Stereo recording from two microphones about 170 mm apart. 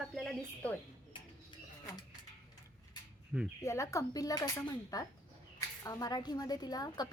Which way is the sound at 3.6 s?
15° left (ahead or behind).